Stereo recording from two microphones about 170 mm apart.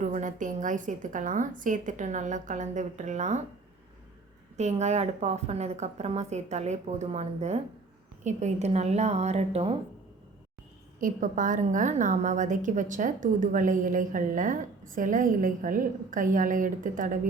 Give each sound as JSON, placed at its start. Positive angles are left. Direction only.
{"t": 0.0, "sound": "a woman's voice", "side_deg": -45}
{"t": 4.5, "sound": "a woman's voice", "side_deg": -40}
{"t": 11.0, "sound": "a woman's voice", "side_deg": -50}